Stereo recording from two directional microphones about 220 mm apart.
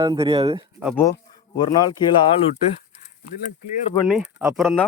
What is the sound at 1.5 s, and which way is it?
Speech, 20° left (ahead or behind).